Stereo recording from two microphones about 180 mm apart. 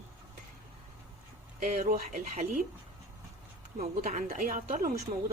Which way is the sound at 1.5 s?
40° right (ahead or behind).